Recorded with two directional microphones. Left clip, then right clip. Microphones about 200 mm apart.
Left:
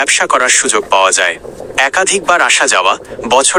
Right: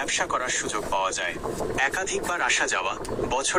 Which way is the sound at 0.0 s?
50° left (ahead or behind).